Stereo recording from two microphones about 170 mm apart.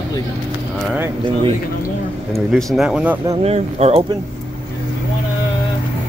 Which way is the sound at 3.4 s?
40° right (ahead or behind).